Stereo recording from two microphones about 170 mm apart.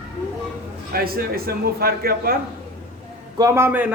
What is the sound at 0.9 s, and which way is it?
A man's voice, 65° right (ahead or behind).